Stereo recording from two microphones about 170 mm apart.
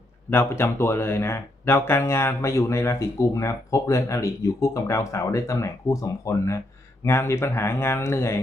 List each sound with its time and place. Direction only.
0.3 s speech: 15° left (ahead or behind)